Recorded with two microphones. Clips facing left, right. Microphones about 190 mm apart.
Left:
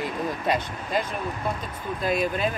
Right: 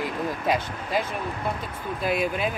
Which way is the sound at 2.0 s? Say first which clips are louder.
Left 1 dB; 5° right (ahead or behind).